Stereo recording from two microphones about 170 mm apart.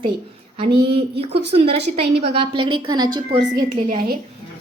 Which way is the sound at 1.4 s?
35° right (ahead or behind).